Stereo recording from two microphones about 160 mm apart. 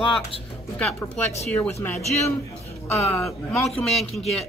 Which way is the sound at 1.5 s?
10° left (ahead or behind).